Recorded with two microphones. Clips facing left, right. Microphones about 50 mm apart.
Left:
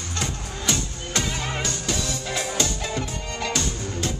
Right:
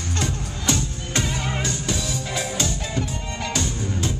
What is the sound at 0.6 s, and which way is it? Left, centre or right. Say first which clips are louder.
Music: right 3 dB; right.